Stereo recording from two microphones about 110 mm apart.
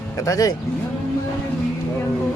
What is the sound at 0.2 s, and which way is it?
Speech, 30° left (ahead or behind).